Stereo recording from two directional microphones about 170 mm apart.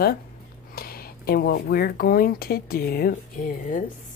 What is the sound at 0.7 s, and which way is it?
A woman's voice, 65° left (ahead or behind).